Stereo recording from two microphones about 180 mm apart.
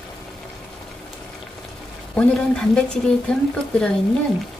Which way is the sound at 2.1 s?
5° left (ahead or behind).